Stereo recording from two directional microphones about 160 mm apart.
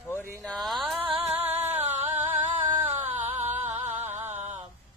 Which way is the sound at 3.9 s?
15° right (ahead or behind).